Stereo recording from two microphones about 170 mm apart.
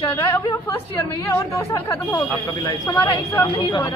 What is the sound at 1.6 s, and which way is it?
Speech, 15° left (ahead or behind).